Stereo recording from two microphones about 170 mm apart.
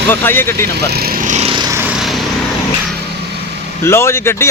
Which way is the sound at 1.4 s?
30° right (ahead or behind).